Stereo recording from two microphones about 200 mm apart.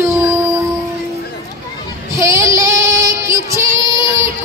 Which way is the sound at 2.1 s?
15° right (ahead or behind).